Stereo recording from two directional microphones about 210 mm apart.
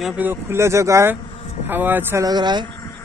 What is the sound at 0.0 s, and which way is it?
Speech, 5° right (ahead or behind).